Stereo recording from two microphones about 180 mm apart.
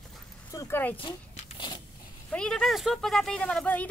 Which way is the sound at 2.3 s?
5° left (ahead or behind).